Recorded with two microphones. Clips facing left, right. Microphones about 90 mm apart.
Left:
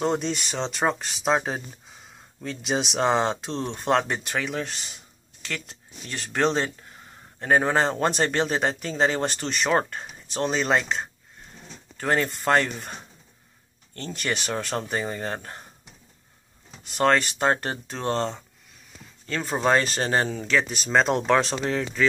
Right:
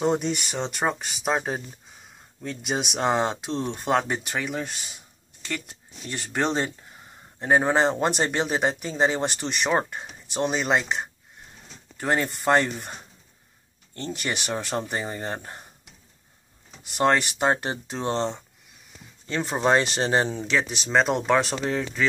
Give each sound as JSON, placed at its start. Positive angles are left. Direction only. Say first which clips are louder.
{"t": 0.0, "sound": "speech", "louder": "right 1 dB", "side_deg": -5}
{"t": 13.9, "sound": "speech", "louder": "left 1 dB", "side_deg": -15}
{"t": 16.9, "sound": "speech", "louder": "even", "side_deg": -10}